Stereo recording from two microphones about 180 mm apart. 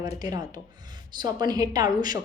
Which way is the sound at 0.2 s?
20° right (ahead or behind).